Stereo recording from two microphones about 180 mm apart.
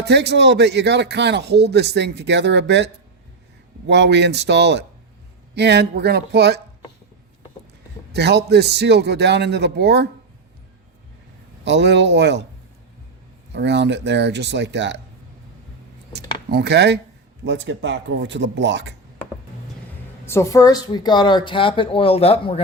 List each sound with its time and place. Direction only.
0.0 s a man's voice: 70° right (ahead or behind)
8.1 s a man's voice: 70° right (ahead or behind)
11.6 s a man's voice: 75° right (ahead or behind)
13.5 s a man's voice: 75° right (ahead or behind)
16.5 s a man's voice: 65° right (ahead or behind)
17.4 s speech: 80° right
20.2 s a woman's voice: 15° left (ahead or behind); by 22.6 s 35° left (ahead or behind)